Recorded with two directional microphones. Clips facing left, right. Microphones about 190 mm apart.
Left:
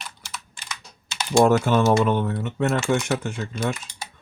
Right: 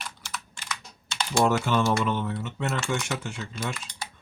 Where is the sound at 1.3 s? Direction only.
50° left (ahead or behind).